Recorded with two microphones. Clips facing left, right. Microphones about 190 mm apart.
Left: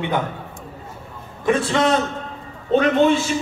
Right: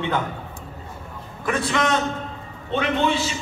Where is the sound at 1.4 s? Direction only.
30° left (ahead or behind).